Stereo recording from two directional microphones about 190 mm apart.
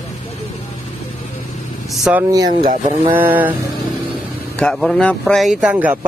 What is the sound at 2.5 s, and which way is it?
Speech, 40° right (ahead or behind).